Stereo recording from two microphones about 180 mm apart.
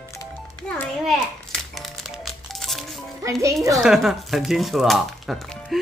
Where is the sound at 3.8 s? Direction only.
Centre (ahead or behind).